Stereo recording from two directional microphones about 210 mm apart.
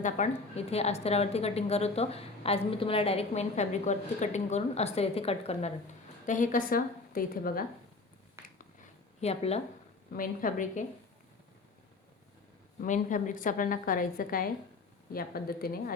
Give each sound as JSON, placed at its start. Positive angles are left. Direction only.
{"t": 0.2, "sound": "a woman's voice", "side_deg": 35}
{"t": 8.4, "sound": "a sound", "side_deg": -10}
{"t": 9.2, "sound": "a woman's voice", "side_deg": 30}
{"t": 12.8, "sound": "a woman's voice", "side_deg": 40}